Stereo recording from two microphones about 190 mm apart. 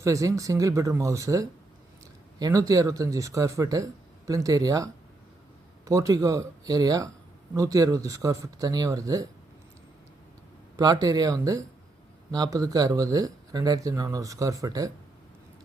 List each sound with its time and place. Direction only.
0.0 s speech: 15° right (ahead or behind)
10.8 s speech: 20° right (ahead or behind)